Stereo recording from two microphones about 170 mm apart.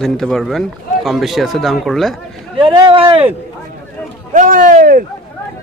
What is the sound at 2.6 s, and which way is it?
Speech, 30° right (ahead or behind).